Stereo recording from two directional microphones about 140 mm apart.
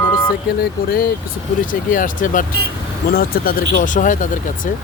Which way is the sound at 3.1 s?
90° left.